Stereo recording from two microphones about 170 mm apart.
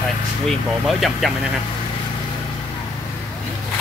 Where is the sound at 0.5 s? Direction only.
Centre (ahead or behind).